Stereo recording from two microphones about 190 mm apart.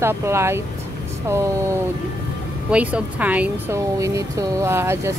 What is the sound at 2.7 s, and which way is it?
Speech, 5° right (ahead or behind).